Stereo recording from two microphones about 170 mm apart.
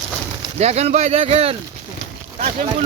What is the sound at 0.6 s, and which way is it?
Speech, 40° right (ahead or behind).